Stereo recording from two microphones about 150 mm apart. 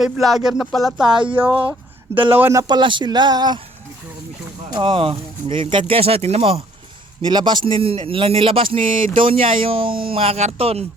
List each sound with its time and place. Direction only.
0.0 s speech: centre (ahead or behind)
1.1 s speech: 35° right (ahead or behind)
2.3 s speech: 15° right (ahead or behind)
4.7 s speech: 35° right (ahead or behind)
7.2 s speech: 30° right (ahead or behind)